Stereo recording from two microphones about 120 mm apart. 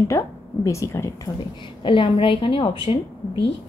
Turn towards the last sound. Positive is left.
turn(degrees=45)  # may be behind; listen again after turning